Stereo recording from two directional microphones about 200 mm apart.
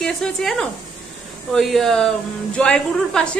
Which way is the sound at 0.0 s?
5° left (ahead or behind).